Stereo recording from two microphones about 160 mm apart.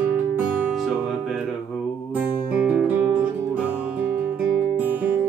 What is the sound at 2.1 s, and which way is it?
Guitar, 10° right (ahead or behind).